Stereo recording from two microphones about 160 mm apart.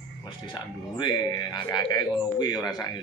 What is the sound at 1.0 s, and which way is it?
Speech, 25° left (ahead or behind).